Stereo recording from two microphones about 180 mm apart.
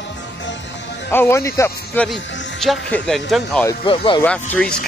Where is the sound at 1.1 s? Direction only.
15° left (ahead or behind).